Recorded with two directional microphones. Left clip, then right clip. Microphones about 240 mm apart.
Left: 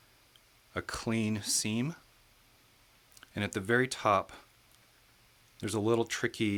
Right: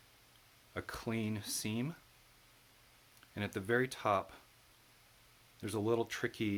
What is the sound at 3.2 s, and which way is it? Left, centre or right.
Speech, left.